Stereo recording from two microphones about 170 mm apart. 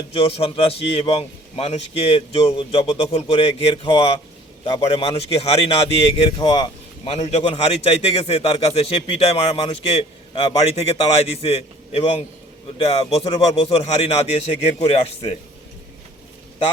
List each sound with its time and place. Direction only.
0.1 s a man's voice: 35° left (ahead or behind)